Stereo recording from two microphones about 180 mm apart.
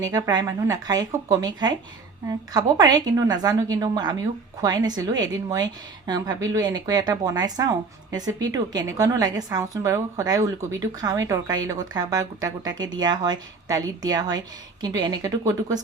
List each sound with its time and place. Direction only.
0.0 s a woman's voice: 20° right (ahead or behind)